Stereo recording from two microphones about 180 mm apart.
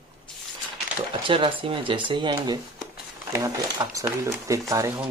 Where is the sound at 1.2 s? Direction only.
30° right (ahead or behind).